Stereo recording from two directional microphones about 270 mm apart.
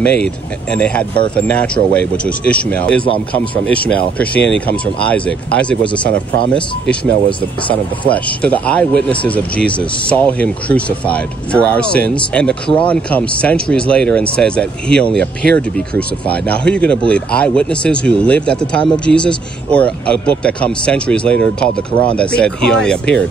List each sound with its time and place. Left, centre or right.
0.0 s speech: centre
6.0 s speech: right
8.0 s speech: centre